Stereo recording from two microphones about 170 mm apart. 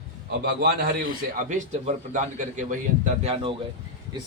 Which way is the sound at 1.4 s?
45° right (ahead or behind).